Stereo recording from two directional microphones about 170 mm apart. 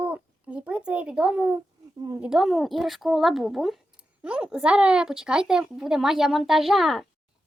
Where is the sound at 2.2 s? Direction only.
Centre (ahead or behind).